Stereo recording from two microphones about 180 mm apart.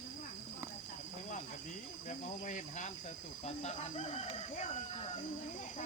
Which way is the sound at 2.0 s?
45° left (ahead or behind).